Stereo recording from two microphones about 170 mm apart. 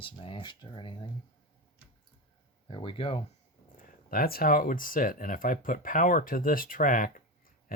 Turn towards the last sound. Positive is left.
turn(degrees=55)  # may be behind; listen again after turning